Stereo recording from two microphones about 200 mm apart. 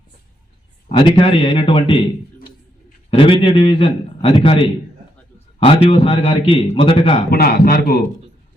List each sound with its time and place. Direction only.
0.9 s a man's voice: 25° left (ahead or behind)
7.3 s a man's voice: 50° left (ahead or behind)